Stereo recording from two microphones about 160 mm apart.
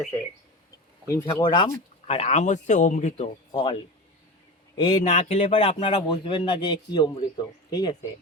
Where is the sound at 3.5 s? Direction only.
35° left (ahead or behind).